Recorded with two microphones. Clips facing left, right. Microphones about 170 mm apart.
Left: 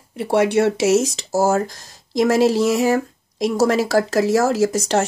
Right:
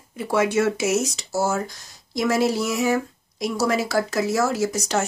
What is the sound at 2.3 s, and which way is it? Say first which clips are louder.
Speech: left 5 dB; 90° left.